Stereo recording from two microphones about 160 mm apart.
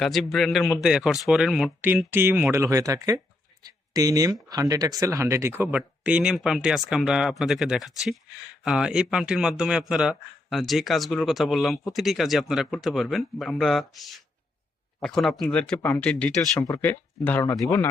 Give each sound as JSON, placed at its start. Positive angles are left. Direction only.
{"t": 0.0, "sound": "speech", "side_deg": 0}
{"t": 2.0, "sound": "speech", "side_deg": -15}
{"t": 16.6, "sound": "speech", "side_deg": 25}
{"t": 16.8, "sound": "speech", "side_deg": 10}